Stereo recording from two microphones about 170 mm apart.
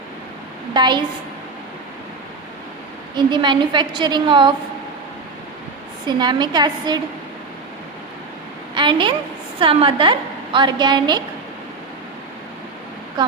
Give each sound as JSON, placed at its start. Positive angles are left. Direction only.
{"t": 0.7, "sound": "a woman's voice", "side_deg": -25}
{"t": 3.2, "sound": "a woman's voice", "side_deg": -25}
{"t": 6.1, "sound": "a woman's voice", "side_deg": -25}
{"t": 8.7, "sound": "a sound", "side_deg": -30}
{"t": 9.6, "sound": "a woman's voice", "side_deg": -30}
{"t": 13.2, "sound": "a woman's voice", "side_deg": -25}